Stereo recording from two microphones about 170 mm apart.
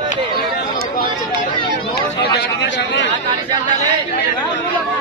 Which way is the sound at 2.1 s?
80° left.